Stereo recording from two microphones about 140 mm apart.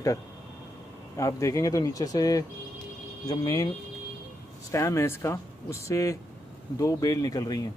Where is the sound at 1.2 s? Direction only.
20° left (ahead or behind).